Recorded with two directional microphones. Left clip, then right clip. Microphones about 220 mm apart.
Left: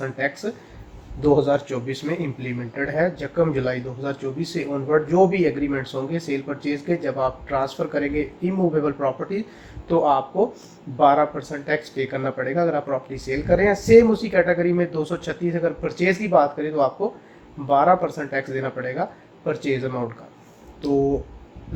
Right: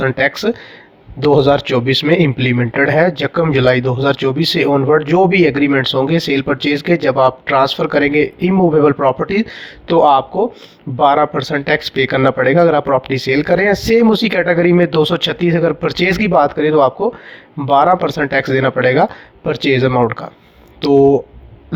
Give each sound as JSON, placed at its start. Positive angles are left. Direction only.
{"t": 0.0, "sound": "speech", "side_deg": -40}